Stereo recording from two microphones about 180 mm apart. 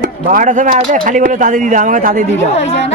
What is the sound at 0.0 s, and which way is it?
Speech, 50° right (ahead or behind).